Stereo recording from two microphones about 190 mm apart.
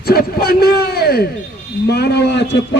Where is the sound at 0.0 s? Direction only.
55° left (ahead or behind).